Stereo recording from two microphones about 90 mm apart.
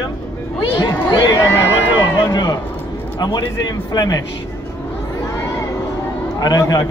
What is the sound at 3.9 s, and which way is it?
Speech, 45° left (ahead or behind).